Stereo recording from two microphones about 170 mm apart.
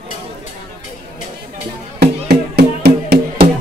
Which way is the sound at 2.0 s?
70° right (ahead or behind).